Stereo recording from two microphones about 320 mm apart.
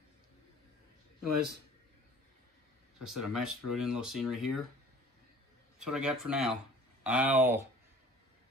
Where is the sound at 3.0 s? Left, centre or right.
Centre.